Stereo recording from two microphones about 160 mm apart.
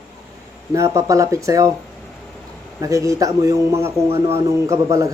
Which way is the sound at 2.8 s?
20° right (ahead or behind).